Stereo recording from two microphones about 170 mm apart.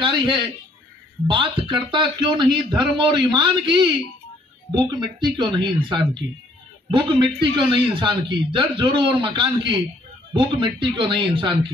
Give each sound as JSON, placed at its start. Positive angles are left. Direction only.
{"t": 0.0, "sound": "a man's voice", "side_deg": -30}